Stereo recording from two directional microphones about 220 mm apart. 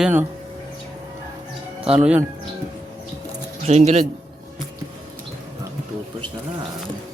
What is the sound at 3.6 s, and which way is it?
Speech, 30° right (ahead or behind).